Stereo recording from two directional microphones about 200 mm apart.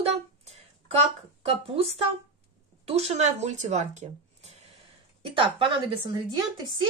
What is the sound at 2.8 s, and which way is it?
A woman's voice, 30° right (ahead or behind).